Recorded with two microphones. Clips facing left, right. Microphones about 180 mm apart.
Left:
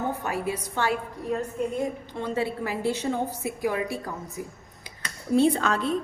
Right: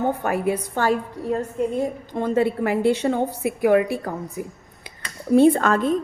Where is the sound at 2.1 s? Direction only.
50° right (ahead or behind).